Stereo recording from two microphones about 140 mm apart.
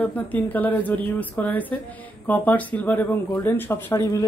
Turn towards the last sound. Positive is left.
turn(degrees=20)  # may be behind; listen again after turning